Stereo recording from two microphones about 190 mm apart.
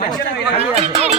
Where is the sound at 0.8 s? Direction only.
35° right (ahead or behind).